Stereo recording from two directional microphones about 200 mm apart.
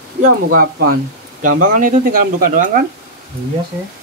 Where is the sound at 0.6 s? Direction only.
50° right (ahead or behind).